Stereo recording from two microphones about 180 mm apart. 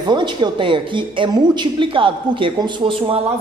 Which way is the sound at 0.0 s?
25° right (ahead or behind).